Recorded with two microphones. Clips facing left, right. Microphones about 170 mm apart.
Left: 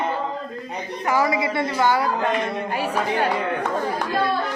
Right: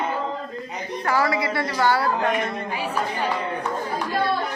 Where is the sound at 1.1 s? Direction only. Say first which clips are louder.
Left 2 dB; 15° left (ahead or behind).